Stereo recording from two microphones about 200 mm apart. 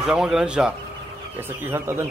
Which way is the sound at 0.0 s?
Centre (ahead or behind).